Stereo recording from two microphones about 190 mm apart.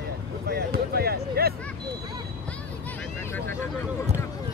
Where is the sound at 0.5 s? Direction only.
55° right (ahead or behind).